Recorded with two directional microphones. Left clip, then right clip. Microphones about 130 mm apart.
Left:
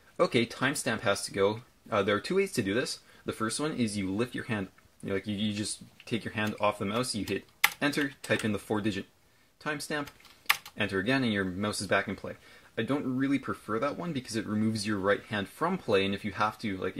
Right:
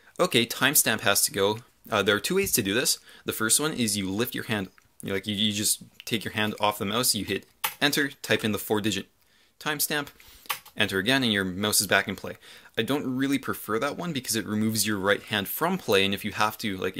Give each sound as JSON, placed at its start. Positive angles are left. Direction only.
{"t": 0.2, "sound": "speech", "side_deg": -15}